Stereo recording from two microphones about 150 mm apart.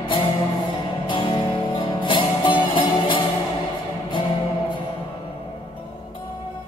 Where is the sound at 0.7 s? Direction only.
35° left (ahead or behind).